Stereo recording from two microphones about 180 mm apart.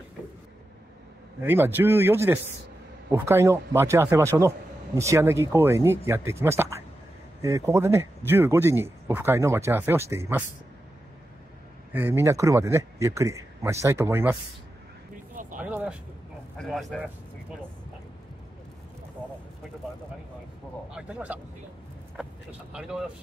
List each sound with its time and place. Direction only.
1.4 s speech: 10° right (ahead or behind)
11.9 s speech: 10° right (ahead or behind)
15.5 s a sound: 10° right (ahead or behind)
16.5 s speech: centre (ahead or behind)
20.9 s speech: 5° right (ahead or behind)